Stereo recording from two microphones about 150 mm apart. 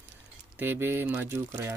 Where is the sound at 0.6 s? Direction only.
15° right (ahead or behind).